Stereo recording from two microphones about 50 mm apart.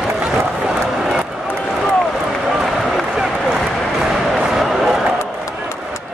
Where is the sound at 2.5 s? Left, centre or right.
Centre.